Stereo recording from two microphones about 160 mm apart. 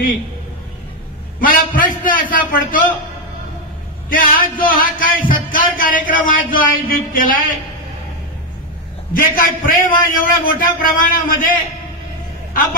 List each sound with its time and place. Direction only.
1.4 s music: 60° left (ahead or behind)
4.1 s music: 60° left (ahead or behind)
9.3 s music: 60° left (ahead or behind)